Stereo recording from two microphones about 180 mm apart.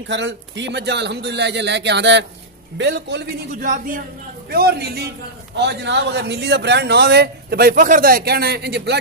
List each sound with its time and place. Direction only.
0.1 s a man's voice: 80° right
3.6 s a man's voice: 50° right (ahead or behind)
5.6 s a man's voice: 70° right (ahead or behind)